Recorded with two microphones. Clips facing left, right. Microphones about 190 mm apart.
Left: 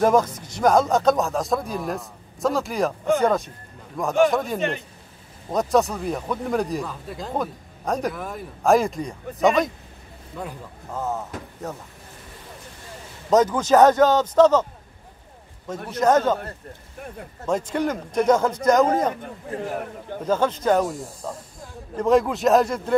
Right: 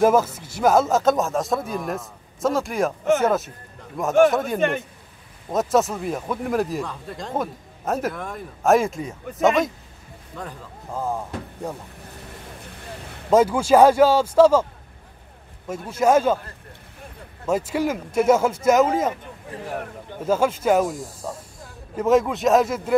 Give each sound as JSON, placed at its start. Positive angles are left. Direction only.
{"t": 0.0, "sound": "speech", "side_deg": -5}
{"t": 4.6, "sound": "speech", "side_deg": -55}
{"t": 5.5, "sound": "speech", "side_deg": 0}
{"t": 10.9, "sound": "speech", "side_deg": -10}
{"t": 13.3, "sound": "speech", "side_deg": -10}
{"t": 15.7, "sound": "speech", "side_deg": -10}
{"t": 17.5, "sound": "speech", "side_deg": -5}
{"t": 20.2, "sound": "speech", "side_deg": -10}